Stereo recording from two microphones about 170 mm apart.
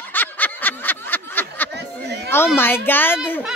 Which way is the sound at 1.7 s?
80° right.